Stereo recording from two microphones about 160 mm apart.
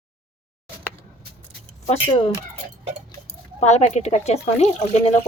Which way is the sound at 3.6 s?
45° left (ahead or behind).